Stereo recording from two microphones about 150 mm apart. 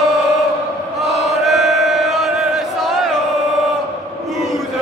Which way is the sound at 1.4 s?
Centre (ahead or behind).